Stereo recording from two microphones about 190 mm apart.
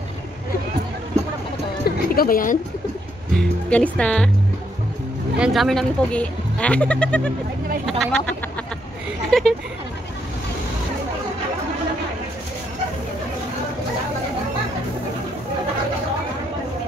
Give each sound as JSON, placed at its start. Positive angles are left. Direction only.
{"t": 1.9, "sound": "music", "side_deg": 50}
{"t": 3.3, "sound": "speech", "side_deg": 5}
{"t": 5.4, "sound": "speech", "side_deg": 0}